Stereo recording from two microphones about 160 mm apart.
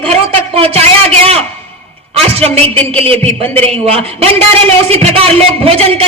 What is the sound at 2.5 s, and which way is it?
A man's voice, 10° left (ahead or behind).